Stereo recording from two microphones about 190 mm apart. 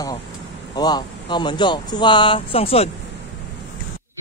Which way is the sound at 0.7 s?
20° left (ahead or behind).